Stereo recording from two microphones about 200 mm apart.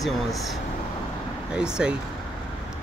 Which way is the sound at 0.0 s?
Centre (ahead or behind).